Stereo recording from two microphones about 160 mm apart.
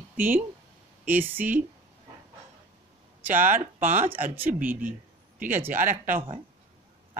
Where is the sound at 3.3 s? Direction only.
55° right (ahead or behind).